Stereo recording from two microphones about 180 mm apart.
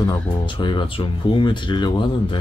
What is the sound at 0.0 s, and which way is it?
Speech, 25° left (ahead or behind).